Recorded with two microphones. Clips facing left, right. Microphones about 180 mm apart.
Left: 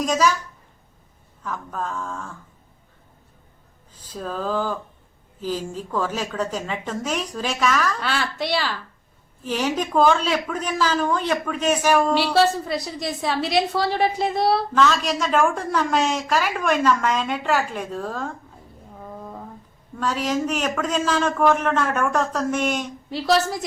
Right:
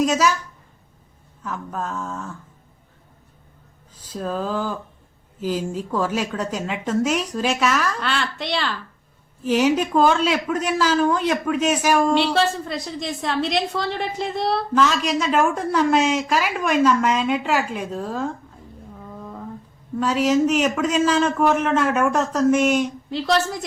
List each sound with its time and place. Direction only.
0.1 s a woman's voice: 10° right (ahead or behind)
1.4 s a woman's voice: 10° right (ahead or behind)
4.1 s a woman's voice: 10° right (ahead or behind)
8.0 s a woman's voice: 5° left (ahead or behind)
9.5 s a woman's voice: 10° right (ahead or behind)
12.1 s a woman's voice: 5° left (ahead or behind)
14.8 s a woman's voice: 10° right (ahead or behind)
20.0 s a woman's voice: 10° right (ahead or behind)
23.1 s a woman's voice: 5° left (ahead or behind)